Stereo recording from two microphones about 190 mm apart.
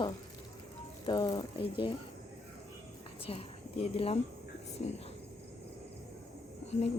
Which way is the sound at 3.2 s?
30° left (ahead or behind).